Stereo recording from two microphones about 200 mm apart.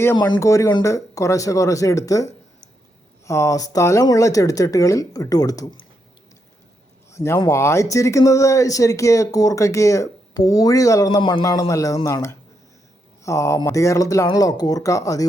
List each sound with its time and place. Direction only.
0.0 s speech: 15° left (ahead or behind)
7.1 s speech: 15° left (ahead or behind)